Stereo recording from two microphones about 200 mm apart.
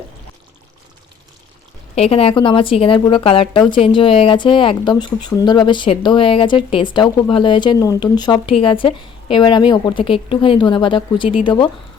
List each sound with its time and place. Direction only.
2.0 s speech: 30° left (ahead or behind)